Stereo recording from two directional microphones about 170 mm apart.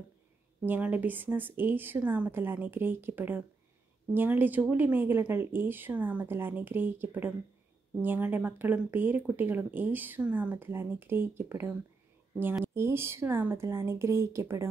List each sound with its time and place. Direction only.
0.7 s speech: 10° right (ahead or behind)